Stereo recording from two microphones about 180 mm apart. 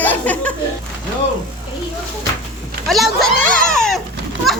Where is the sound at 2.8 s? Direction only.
Centre (ahead or behind).